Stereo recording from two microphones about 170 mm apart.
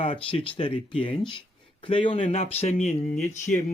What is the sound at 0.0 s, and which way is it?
Speech, 30° left (ahead or behind).